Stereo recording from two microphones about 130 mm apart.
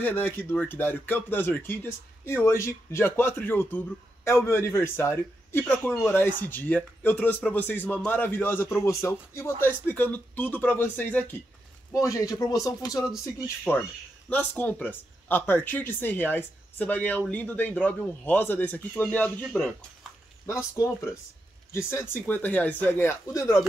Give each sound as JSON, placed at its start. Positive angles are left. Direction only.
{"t": 0.0, "sound": "speech", "side_deg": 15}
{"t": 11.9, "sound": "speech", "side_deg": 25}
{"t": 13.7, "sound": "speech", "side_deg": 15}
{"t": 20.7, "sound": "speech", "side_deg": 20}